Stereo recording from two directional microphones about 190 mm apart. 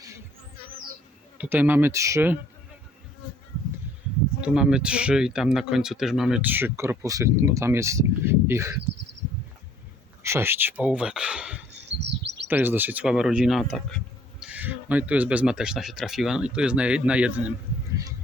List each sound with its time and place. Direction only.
1.4 s speech: 10° right (ahead or behind)
4.4 s speech: 5° right (ahead or behind)
10.2 s speech: 15° right (ahead or behind)
11.9 s bird: 65° right (ahead or behind)
12.5 s speech: 10° right (ahead or behind)